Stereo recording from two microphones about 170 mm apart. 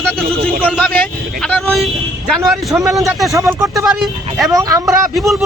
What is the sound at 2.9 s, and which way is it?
Speech, centre (ahead or behind).